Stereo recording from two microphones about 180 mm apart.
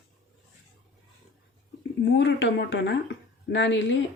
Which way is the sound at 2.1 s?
80° left.